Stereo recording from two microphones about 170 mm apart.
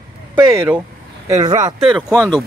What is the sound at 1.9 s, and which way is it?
Speech, 5° right (ahead or behind).